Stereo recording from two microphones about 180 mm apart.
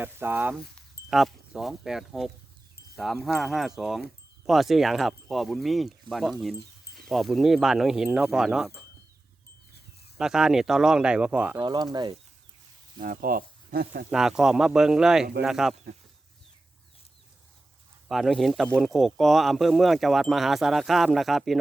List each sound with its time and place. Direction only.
0.0 s speech: 10° right (ahead or behind)
10.2 s speech: 5° right (ahead or behind)
11.6 s speech: 25° right (ahead or behind)
13.0 s speech: 50° right (ahead or behind)
14.1 s speech: centre (ahead or behind)
18.1 s speech: centre (ahead or behind)